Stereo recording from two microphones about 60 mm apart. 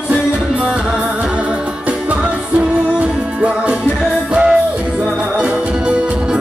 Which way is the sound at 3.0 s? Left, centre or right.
Right.